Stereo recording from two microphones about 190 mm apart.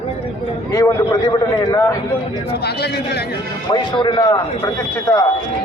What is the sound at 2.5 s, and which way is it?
Speech, 60° left (ahead or behind).